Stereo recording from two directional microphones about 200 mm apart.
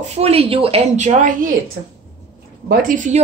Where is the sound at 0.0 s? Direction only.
30° right (ahead or behind).